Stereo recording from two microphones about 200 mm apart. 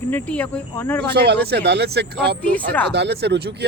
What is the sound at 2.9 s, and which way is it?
Speech, 55° right (ahead or behind).